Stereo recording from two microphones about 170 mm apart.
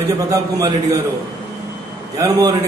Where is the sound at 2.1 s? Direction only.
20° right (ahead or behind).